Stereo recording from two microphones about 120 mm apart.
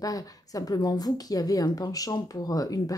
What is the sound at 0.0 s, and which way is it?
A woman's voice, 30° left (ahead or behind).